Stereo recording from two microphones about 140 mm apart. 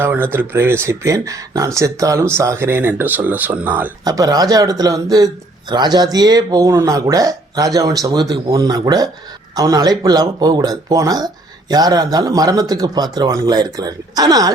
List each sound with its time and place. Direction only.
0.0 s speech: 15° right (ahead or behind)
4.0 s speech: 25° right (ahead or behind)